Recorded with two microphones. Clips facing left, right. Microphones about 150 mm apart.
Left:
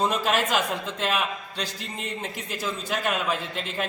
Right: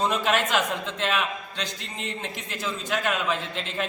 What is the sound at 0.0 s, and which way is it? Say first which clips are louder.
A man's voice: even; 5° left (ahead or behind).